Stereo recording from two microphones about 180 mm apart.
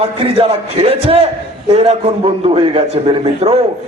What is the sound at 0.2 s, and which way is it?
A man's voice, 35° right (ahead or behind).